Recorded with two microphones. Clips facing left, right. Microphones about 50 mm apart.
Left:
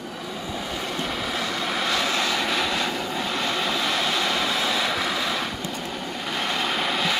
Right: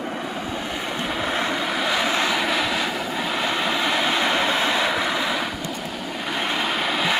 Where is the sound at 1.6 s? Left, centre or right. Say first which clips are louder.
Right 2 dB; centre.